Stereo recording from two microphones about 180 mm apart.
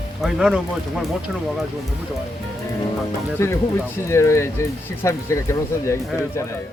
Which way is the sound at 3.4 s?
15° left (ahead or behind).